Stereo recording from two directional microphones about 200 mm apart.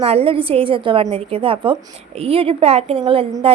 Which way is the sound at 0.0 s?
30° right (ahead or behind).